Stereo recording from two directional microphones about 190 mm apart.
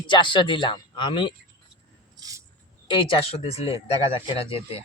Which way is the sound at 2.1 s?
20° right (ahead or behind).